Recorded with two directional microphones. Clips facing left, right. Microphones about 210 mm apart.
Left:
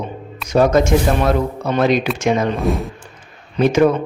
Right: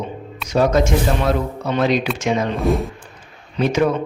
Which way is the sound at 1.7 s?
50° left (ahead or behind).